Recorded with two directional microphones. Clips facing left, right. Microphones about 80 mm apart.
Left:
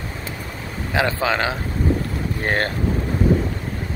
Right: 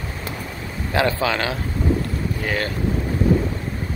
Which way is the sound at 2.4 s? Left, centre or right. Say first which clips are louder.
Left 4 dB; left.